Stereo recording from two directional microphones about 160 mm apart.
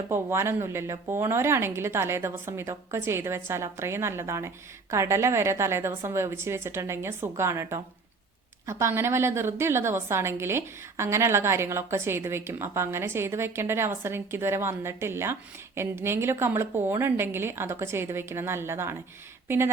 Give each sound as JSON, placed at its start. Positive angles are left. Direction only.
{"t": 0.1, "sound": "a woman's voice", "side_deg": -15}